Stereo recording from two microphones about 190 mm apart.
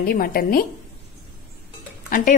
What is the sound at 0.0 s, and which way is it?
Speech, 50° left (ahead or behind).